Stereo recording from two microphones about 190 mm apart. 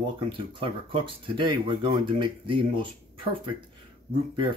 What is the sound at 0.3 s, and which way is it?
Speech, 25° right (ahead or behind).